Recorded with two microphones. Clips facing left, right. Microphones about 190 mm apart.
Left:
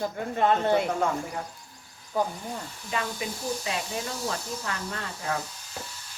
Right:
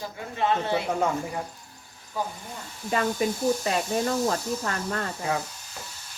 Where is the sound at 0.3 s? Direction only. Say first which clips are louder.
Left 2 dB; 50° left (ahead or behind).